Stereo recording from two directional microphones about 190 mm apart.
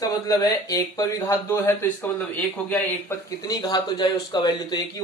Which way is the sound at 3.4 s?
20° left (ahead or behind).